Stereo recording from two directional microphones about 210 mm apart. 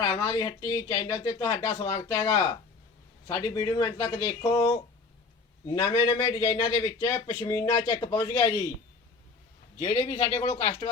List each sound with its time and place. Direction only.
0.0 s a man's voice: 20° left (ahead or behind)
9.7 s a man's voice: 20° left (ahead or behind)